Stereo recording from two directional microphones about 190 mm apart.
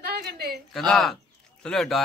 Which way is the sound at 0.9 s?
Centre (ahead or behind).